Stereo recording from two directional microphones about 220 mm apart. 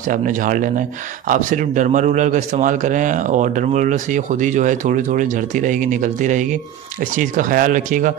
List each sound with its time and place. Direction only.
0.0 s speech: 35° right (ahead or behind)